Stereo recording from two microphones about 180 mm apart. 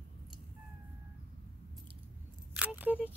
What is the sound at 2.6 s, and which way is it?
Single-lens reflex camera, 5° right (ahead or behind).